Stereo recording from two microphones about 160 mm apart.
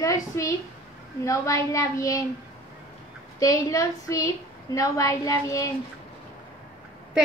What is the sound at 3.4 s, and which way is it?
Child singing, 20° left (ahead or behind).